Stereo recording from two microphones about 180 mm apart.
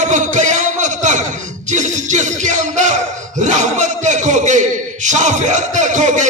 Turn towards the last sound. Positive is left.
turn(degrees=-40)  # may be behind; listen again after turning